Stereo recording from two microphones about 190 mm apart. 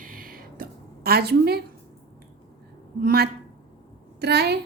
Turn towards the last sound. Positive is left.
turn(degrees=-60)  # may be behind; listen again after turning